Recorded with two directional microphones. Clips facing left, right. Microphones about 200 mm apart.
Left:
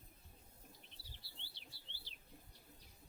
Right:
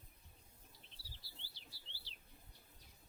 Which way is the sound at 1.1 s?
60° left (ahead or behind).